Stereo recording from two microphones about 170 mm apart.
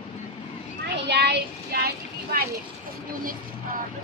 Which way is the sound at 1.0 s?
75° right (ahead or behind).